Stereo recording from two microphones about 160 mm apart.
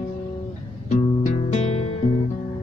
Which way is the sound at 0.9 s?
45° left (ahead or behind).